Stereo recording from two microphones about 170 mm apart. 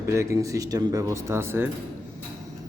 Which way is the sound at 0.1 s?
20° right (ahead or behind).